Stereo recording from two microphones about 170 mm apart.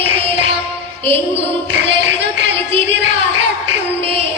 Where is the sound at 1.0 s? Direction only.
35° right (ahead or behind).